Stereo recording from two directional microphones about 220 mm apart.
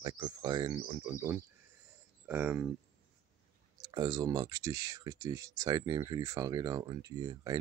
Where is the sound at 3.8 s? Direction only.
15° right (ahead or behind).